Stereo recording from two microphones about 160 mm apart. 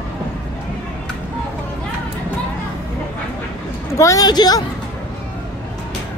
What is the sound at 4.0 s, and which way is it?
Speech, 20° left (ahead or behind).